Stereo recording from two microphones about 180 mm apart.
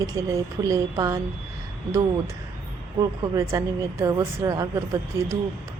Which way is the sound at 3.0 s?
20° right (ahead or behind).